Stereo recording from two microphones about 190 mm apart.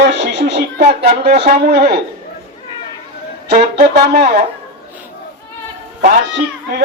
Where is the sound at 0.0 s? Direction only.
70° right (ahead or behind).